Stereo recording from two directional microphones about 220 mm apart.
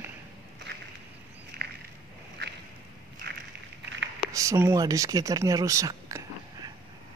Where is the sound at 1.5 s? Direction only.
45° right (ahead or behind).